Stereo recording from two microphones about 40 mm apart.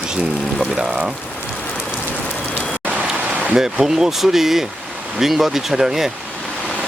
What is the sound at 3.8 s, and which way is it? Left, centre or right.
Speech, centre.